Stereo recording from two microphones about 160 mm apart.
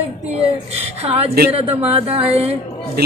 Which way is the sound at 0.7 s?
40° right (ahead or behind).